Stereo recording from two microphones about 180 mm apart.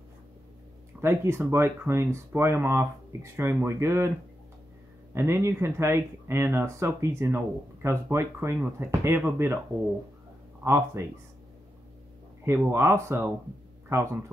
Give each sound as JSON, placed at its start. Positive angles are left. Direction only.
{"t": 1.0, "sound": "speech", "side_deg": -15}
{"t": 5.1, "sound": "speech", "side_deg": -15}
{"t": 10.6, "sound": "speech", "side_deg": -15}
{"t": 12.4, "sound": "speech", "side_deg": -15}